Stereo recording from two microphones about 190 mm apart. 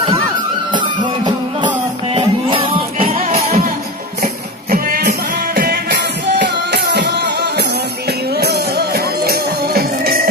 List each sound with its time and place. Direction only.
0.7 s music: 25° right (ahead or behind)
4.2 s music: 50° right (ahead or behind)
8.4 s music: 55° right (ahead or behind)